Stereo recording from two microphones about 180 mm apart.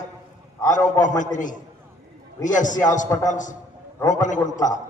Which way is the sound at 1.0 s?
45° left (ahead or behind).